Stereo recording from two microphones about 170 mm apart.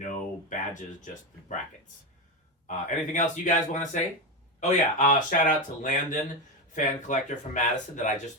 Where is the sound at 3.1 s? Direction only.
45° left (ahead or behind).